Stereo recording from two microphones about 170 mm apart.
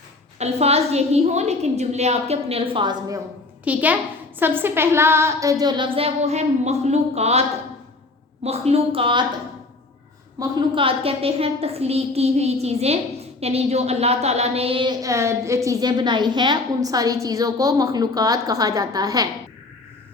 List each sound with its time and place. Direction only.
0.3 s a woman's voice: 40° right (ahead or behind)
3.6 s a woman's voice: 10° right (ahead or behind); by 7.4 s 40° right (ahead or behind)
8.4 s a woman's voice: 35° right (ahead or behind)
10.4 s a woman's voice: 25° right (ahead or behind)